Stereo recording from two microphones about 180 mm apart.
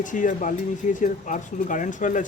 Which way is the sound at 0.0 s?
45° left (ahead or behind).